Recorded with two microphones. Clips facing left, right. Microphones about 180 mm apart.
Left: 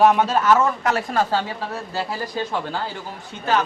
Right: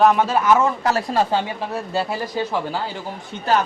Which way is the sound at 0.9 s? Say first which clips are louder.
Right 2 dB; 30° right (ahead or behind).